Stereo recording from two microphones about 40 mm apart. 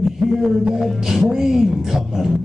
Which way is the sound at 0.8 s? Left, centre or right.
Centre.